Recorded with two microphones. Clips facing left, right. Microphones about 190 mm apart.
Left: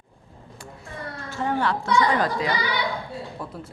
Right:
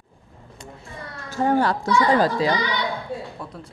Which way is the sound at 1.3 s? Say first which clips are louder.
Right 5 dB; 40° right (ahead or behind).